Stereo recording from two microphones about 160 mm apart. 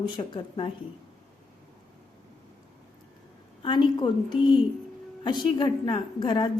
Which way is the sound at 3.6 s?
30° left (ahead or behind).